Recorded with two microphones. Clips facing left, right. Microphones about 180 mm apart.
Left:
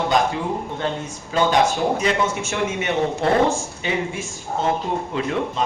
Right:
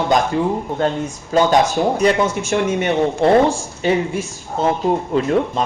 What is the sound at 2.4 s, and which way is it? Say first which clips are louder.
Speech: right 6 dB; 35° right (ahead or behind).